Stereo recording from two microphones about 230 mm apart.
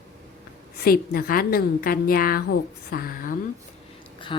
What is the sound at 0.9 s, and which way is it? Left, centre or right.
Speech, left.